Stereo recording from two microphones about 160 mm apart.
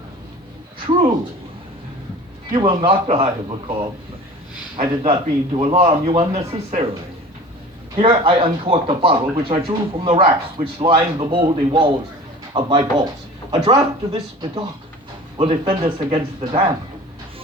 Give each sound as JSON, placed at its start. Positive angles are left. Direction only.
{"t": 2.5, "sound": "speech", "side_deg": -30}
{"t": 5.0, "sound": "speech", "side_deg": -35}
{"t": 7.9, "sound": "speech", "side_deg": -35}